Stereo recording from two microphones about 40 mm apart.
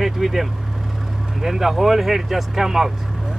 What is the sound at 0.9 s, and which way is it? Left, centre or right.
Speech, centre.